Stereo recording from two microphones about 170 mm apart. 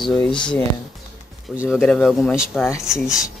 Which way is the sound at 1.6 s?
Centre (ahead or behind).